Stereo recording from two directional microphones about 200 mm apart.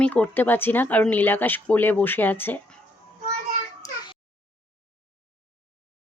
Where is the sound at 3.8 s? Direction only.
15° left (ahead or behind).